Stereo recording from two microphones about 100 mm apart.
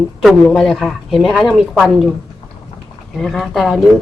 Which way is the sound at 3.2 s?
5° left (ahead or behind).